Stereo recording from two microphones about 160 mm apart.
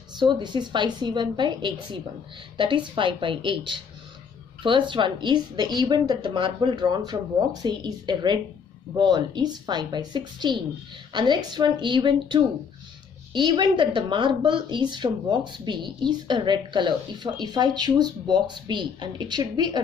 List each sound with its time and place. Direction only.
0.2 s a woman's voice: 30° right (ahead or behind)